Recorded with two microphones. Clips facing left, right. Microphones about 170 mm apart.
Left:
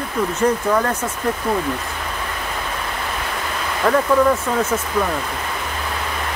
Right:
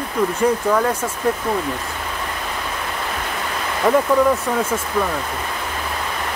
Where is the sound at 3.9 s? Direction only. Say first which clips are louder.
Right 1 dB; 10° right (ahead or behind).